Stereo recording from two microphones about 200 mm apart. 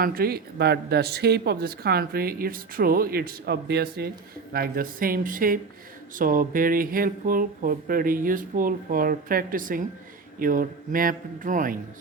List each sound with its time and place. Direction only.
0.0 s speech: 50° right (ahead or behind)